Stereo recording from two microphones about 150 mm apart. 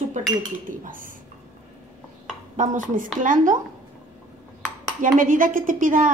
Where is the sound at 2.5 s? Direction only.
60° right (ahead or behind).